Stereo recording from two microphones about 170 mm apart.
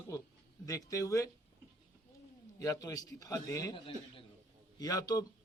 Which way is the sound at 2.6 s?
20° left (ahead or behind).